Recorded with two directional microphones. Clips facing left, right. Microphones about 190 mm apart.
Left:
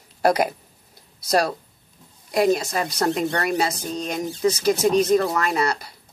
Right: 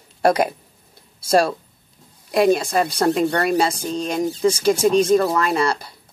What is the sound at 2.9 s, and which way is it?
Speech, 30° right (ahead or behind).